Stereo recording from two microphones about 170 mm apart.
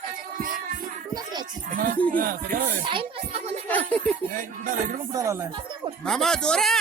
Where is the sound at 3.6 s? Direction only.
10° left (ahead or behind).